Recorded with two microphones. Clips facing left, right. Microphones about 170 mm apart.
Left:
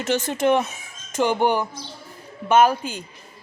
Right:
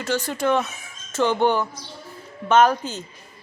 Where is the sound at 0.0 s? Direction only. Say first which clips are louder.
Left 2 dB; 20° left (ahead or behind).